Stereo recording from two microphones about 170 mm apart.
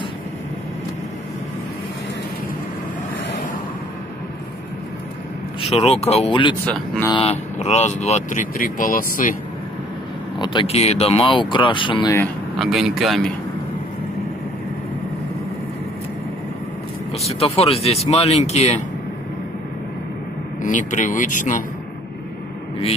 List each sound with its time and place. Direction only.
5.6 s speech: 35° left (ahead or behind)
6.6 s speech: 5° left (ahead or behind)
7.1 s speech: 35° left (ahead or behind); by 9.4 s 55° left (ahead or behind)
10.4 s speech: 30° left (ahead or behind)
12.5 s speech: centre (ahead or behind)
17.3 s speech: 35° left (ahead or behind)
20.6 s speech: 45° left (ahead or behind)